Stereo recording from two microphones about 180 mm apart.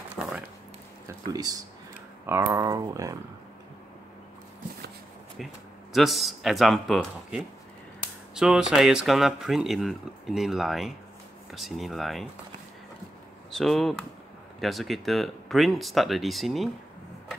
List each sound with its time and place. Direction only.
1.0 s speech: 20° right (ahead or behind)
5.9 s speech: centre (ahead or behind)
13.5 s speech: centre (ahead or behind)